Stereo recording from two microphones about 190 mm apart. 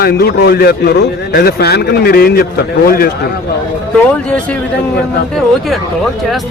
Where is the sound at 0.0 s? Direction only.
55° left (ahead or behind).